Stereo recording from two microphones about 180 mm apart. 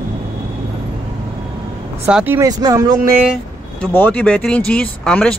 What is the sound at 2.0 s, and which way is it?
Speech, 10° right (ahead or behind).